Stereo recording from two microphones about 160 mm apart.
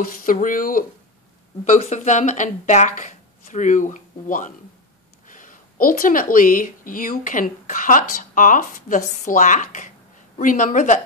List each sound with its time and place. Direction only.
0.0 s speech: 60° left (ahead or behind)
1.6 s speech: 45° left (ahead or behind)